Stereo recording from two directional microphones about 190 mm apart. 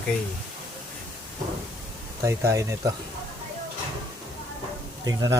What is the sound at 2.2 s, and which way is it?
Speech, 15° right (ahead or behind).